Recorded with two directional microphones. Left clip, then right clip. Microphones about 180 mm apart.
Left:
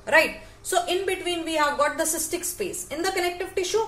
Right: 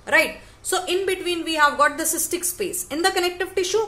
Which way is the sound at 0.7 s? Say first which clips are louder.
Right 1 dB; 35° right (ahead or behind).